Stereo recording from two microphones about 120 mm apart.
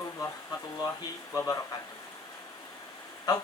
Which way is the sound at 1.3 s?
25° left (ahead or behind).